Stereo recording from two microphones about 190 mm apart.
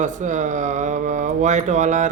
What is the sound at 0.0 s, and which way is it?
Speech, 40° right (ahead or behind).